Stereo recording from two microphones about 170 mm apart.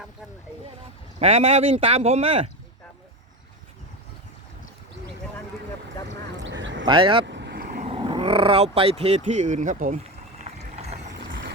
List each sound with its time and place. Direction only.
1.2 s speech: 35° right (ahead or behind)
6.1 s a sound: 90° right
6.8 s speech: 30° right (ahead or behind)
7.3 s vehicle: 85° right; by 7.8 s 70° right (ahead or behind)
7.8 s speech: 35° right (ahead or behind)
10.4 s a sound: 40° right (ahead or behind)